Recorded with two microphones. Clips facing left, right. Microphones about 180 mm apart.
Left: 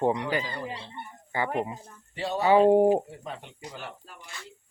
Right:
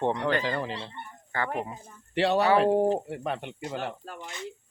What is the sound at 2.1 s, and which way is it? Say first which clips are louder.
Speech: right 6 dB; 75° right (ahead or behind).